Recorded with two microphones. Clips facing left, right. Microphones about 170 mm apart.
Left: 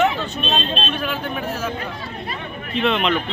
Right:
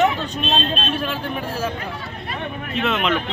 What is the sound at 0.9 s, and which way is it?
Speech, 30° right (ahead or behind).